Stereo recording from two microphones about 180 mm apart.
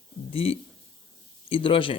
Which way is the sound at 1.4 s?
30° left (ahead or behind).